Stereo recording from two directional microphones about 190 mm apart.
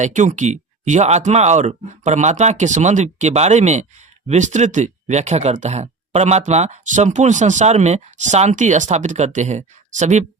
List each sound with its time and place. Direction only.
0.0 s speech: 40° right (ahead or behind)